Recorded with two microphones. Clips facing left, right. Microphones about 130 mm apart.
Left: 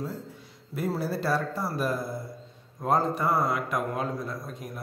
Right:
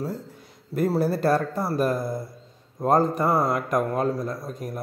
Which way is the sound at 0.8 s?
45° right (ahead or behind).